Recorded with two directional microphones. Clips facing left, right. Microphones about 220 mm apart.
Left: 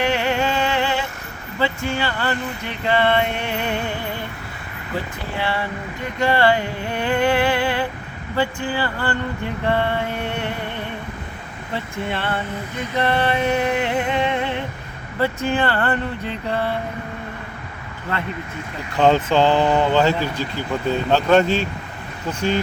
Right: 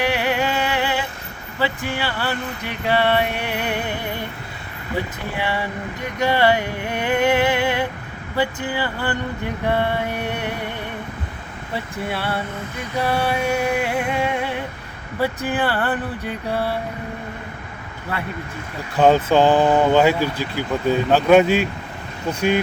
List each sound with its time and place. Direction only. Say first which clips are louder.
0.0 s a sound: left 1 dB; 15° right (ahead or behind)
1.5 s speech: left 1 dB; 10° right (ahead or behind)
5.4 s speech: even; 15° right (ahead or behind)
11.7 s speech: even; 10° right (ahead or behind)
18.9 s speech: right 1 dB; 10° right (ahead or behind)